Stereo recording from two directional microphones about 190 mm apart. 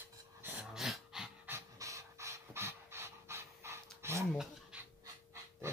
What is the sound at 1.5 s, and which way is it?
Pant, 15° right (ahead or behind).